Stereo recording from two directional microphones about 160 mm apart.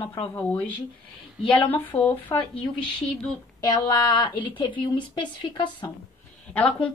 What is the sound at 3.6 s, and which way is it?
A woman's voice, 20° left (ahead or behind).